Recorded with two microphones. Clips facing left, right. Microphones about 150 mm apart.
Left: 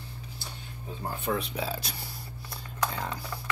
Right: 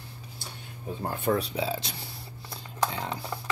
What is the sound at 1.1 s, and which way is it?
Speech, 50° right (ahead or behind).